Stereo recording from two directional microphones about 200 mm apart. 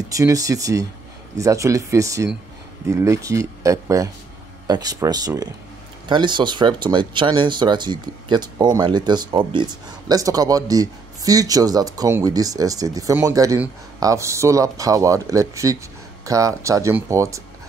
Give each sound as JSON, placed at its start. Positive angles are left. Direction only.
{"t": 0.1, "sound": "speech", "side_deg": -15}